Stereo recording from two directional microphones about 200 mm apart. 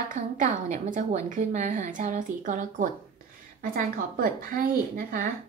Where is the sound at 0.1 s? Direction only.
40° right (ahead or behind).